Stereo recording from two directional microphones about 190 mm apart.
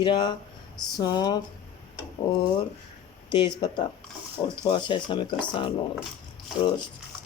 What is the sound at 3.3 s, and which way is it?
Speech, 25° left (ahead or behind).